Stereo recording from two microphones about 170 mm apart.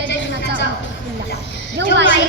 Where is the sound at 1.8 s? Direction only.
90° right.